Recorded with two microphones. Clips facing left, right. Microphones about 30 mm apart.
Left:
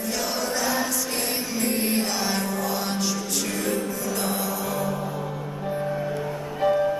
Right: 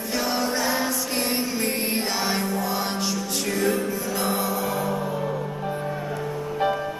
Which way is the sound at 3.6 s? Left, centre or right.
Centre.